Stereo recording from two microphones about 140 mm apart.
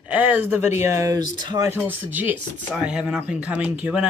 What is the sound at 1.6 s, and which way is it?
Speech, 15° right (ahead or behind).